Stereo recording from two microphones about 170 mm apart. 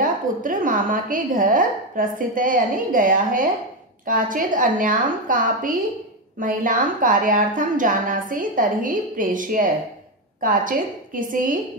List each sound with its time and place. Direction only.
0.0 s a woman's voice: 55° right (ahead or behind)